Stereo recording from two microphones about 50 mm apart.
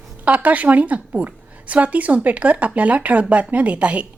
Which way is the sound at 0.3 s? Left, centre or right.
Right.